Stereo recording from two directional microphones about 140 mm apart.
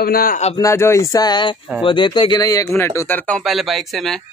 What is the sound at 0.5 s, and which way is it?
Speech, 20° left (ahead or behind).